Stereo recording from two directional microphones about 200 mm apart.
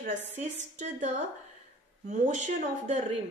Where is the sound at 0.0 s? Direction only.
35° right (ahead or behind).